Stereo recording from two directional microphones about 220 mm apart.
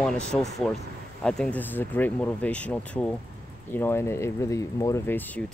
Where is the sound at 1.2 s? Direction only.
5° left (ahead or behind).